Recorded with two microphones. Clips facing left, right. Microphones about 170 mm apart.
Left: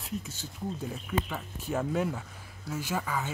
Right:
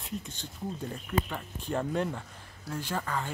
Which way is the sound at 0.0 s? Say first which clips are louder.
Left 1 dB; 5° left (ahead or behind).